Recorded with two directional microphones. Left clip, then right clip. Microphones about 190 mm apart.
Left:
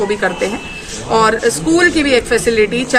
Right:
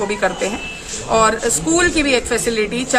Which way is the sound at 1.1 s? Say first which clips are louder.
Left 3 dB; 35° right (ahead or behind).